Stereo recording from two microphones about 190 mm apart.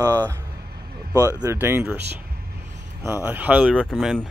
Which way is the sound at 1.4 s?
15° right (ahead or behind).